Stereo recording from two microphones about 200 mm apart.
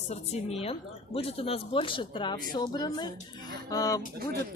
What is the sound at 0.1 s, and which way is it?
Speech, 35° left (ahead or behind).